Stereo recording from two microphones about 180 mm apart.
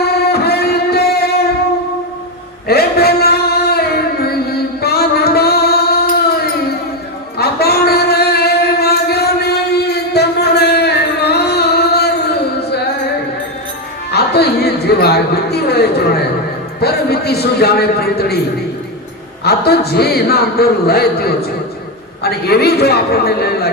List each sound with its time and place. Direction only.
0.3 s music: 65° left (ahead or behind)
2.6 s a sound: 60° left (ahead or behind)
14.1 s music: 65° left (ahead or behind)
16.8 s a man's voice: 60° left (ahead or behind)
19.5 s a man's voice: 60° left (ahead or behind)